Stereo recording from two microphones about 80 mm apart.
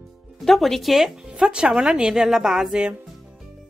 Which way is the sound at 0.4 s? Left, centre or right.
Centre.